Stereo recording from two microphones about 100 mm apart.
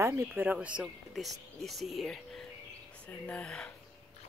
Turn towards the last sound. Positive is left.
turn(degrees=10)  # may be behind; listen again after turning